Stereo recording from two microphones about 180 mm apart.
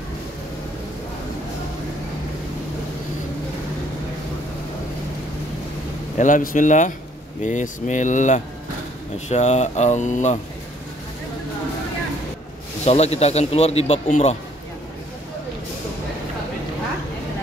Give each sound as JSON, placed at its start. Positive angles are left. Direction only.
{"t": 6.1, "sound": "a man's voice", "side_deg": 45}
{"t": 12.8, "sound": "a man's voice", "side_deg": 35}